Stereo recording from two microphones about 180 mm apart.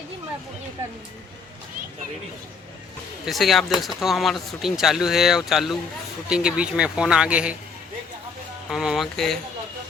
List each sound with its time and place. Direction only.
3.2 s speech: centre (ahead or behind)
8.7 s speech: centre (ahead or behind)